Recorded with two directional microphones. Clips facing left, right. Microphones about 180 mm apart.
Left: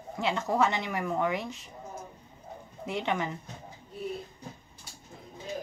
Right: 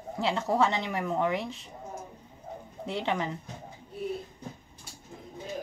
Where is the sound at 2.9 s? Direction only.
30° right (ahead or behind).